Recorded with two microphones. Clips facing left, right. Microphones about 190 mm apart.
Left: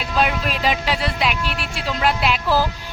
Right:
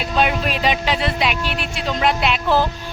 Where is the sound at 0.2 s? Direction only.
Centre (ahead or behind).